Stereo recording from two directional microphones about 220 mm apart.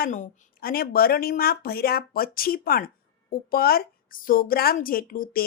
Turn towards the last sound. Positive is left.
turn(degrees=40)  # may be behind; listen again after turning